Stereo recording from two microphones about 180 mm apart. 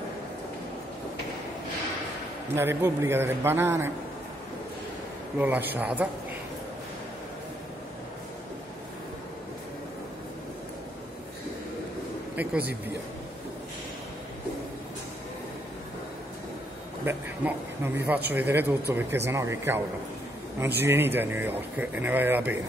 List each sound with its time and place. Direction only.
2.5 s speech: 15° right (ahead or behind)
5.4 s speech: 10° right (ahead or behind)
12.4 s speech: 10° right (ahead or behind)
17.0 s speech: 10° right (ahead or behind)
20.8 s speech: 10° right (ahead or behind)